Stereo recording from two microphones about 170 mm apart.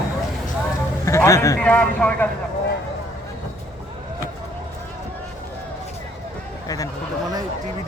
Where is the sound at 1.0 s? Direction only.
15° left (ahead or behind).